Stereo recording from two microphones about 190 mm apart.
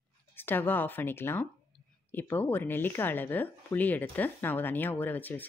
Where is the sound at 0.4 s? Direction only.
10° left (ahead or behind).